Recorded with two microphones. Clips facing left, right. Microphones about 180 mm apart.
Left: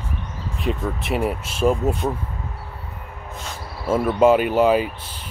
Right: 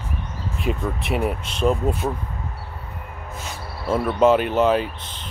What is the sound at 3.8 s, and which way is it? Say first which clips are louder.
Speech: left 1 dB; 5° left (ahead or behind).